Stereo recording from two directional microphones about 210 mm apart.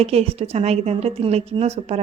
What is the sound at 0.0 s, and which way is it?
A woman's voice, 30° right (ahead or behind).